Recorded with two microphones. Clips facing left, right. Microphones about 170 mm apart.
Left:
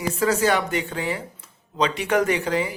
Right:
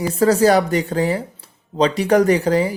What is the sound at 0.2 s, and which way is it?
Speech, 35° right (ahead or behind).